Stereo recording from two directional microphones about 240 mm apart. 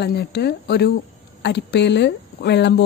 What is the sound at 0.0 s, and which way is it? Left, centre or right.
Speech, left.